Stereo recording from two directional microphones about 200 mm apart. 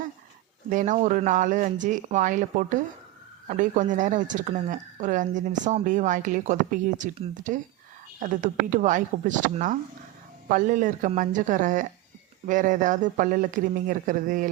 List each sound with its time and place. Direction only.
0.7 s a woman's voice: 40° right (ahead or behind)